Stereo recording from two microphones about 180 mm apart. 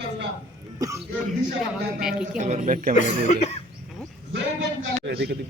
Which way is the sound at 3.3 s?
40° left (ahead or behind).